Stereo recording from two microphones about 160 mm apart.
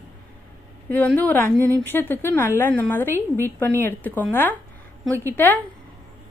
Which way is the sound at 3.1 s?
15° right (ahead or behind).